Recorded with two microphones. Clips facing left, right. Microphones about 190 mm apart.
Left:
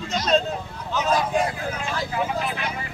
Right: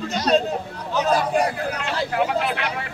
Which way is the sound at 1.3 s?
70° right (ahead or behind).